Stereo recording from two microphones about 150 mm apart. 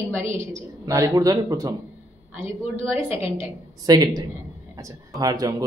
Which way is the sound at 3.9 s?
25° right (ahead or behind).